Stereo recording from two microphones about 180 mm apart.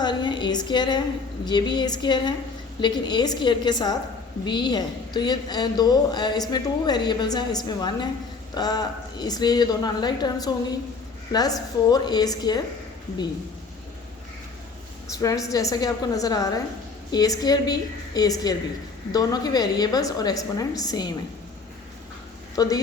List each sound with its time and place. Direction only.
0.0 s a sound: 25° left (ahead or behind)
1.5 s a woman's voice: 25° left (ahead or behind)
15.0 s a woman's voice: 20° left (ahead or behind)
22.5 s a woman's voice: 20° left (ahead or behind)